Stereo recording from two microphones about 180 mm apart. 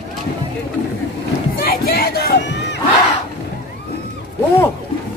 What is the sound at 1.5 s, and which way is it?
Crowd, 55° left (ahead or behind).